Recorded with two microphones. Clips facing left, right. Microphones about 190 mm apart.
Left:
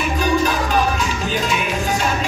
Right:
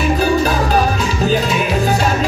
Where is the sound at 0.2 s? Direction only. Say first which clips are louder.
Right 3 dB; 35° right (ahead or behind).